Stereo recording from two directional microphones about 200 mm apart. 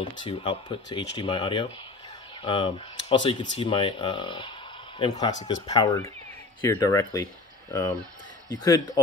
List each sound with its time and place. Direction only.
0.0 s speech: 25° left (ahead or behind)
8.5 s speech: 20° left (ahead or behind)